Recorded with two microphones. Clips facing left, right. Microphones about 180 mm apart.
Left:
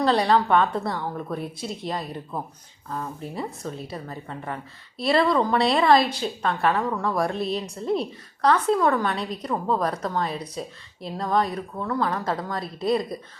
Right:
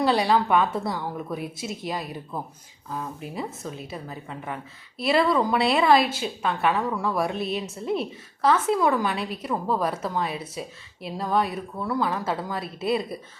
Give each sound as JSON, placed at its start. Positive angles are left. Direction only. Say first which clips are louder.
{"t": 0.0, "sound": "a woman's voice", "louder": "left 1 dB", "side_deg": -5}
{"t": 3.3, "sound": "a woman's voice", "louder": "left 1 dB", "side_deg": 0}